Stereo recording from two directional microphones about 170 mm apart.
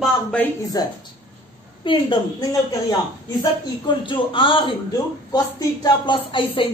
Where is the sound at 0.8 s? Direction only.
20° left (ahead or behind).